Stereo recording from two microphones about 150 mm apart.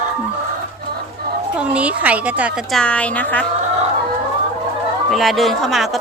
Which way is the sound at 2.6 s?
Centre (ahead or behind).